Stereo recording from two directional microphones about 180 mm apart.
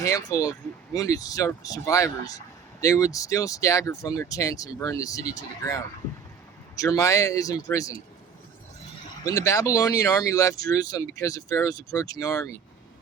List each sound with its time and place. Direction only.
0.0 s speech: 20° left (ahead or behind)
9.2 s speech: 15° left (ahead or behind)